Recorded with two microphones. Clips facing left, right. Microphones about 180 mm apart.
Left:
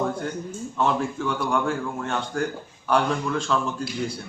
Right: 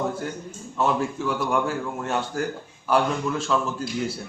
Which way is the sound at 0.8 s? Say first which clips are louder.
Even; 5° right (ahead or behind).